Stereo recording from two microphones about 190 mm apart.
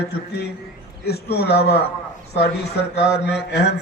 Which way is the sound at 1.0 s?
55° left (ahead or behind).